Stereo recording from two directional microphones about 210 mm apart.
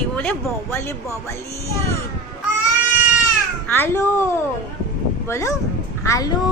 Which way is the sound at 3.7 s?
10° left (ahead or behind).